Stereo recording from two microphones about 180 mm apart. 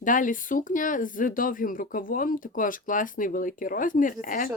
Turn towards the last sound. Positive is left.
turn(degrees=50)  # may be behind; listen again after turning